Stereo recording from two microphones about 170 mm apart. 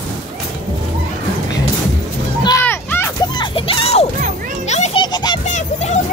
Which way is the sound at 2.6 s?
15° left (ahead or behind).